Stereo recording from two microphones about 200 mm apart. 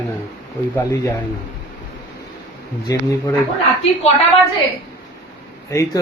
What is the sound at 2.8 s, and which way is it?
Speech, 15° left (ahead or behind).